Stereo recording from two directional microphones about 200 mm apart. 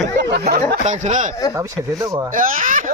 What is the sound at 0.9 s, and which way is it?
Speech, 35° right (ahead or behind).